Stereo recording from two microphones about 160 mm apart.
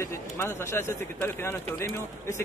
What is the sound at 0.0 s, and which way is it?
Speech, 15° left (ahead or behind).